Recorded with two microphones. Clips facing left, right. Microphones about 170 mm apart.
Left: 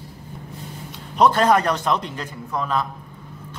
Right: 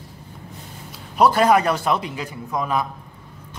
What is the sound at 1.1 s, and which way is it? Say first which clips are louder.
A man's voice: right 1 dB; 5° right (ahead or behind).